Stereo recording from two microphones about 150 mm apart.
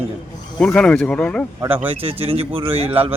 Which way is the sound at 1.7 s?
10° right (ahead or behind).